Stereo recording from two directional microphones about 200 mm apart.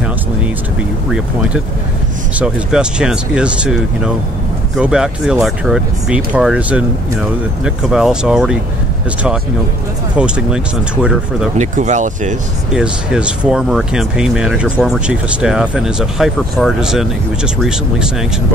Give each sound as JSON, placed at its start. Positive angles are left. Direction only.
{"t": 2.3, "sound": "speech", "side_deg": -5}
{"t": 10.1, "sound": "speech", "side_deg": -5}
{"t": 11.5, "sound": "speech", "side_deg": -35}
{"t": 12.7, "sound": "speech", "side_deg": -5}